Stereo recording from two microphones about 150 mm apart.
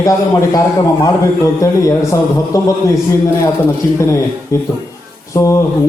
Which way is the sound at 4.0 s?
20° left (ahead or behind).